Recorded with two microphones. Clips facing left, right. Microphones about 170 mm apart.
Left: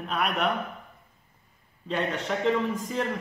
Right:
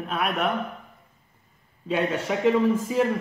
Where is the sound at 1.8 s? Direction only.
5° right (ahead or behind).